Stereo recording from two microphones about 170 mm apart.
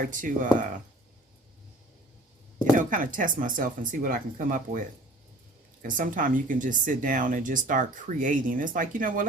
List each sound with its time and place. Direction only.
0.0 s speech: 50° right (ahead or behind)
2.7 s speech: 50° right (ahead or behind)
5.8 s speech: 55° right (ahead or behind)